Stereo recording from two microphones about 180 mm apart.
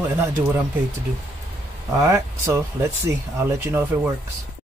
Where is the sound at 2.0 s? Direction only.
15° right (ahead or behind).